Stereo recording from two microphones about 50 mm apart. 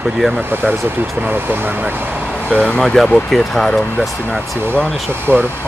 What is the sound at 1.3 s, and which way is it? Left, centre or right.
Speech, right.